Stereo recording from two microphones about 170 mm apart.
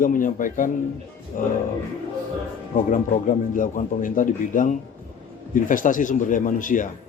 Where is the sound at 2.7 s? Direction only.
50° left (ahead or behind).